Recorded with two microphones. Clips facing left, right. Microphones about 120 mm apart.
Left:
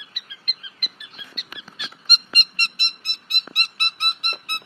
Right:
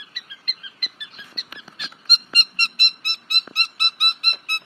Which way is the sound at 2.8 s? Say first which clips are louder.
Right 4 dB; 55° right (ahead or behind).